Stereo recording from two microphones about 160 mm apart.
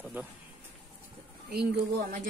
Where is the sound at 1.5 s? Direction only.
90° right.